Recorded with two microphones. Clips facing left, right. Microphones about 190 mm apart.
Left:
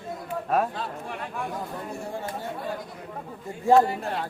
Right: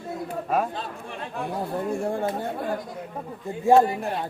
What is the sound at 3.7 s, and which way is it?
Speech, 20° right (ahead or behind).